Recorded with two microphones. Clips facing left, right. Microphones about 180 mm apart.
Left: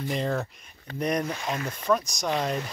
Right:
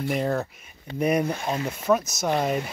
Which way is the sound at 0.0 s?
5° right (ahead or behind).